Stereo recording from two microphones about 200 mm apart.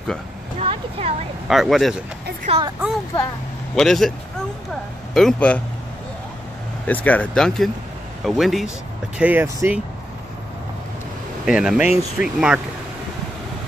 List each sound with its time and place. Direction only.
0.6 s a sound: 30° right (ahead or behind)
1.5 s speech: centre (ahead or behind)
2.5 s speech: 30° right (ahead or behind)
3.7 s speech: centre (ahead or behind)
5.1 s speech: 5° left (ahead or behind)
6.9 s speech: 10° left (ahead or behind); by 9.8 s 10° right (ahead or behind)
11.4 s speech: 5° right (ahead or behind)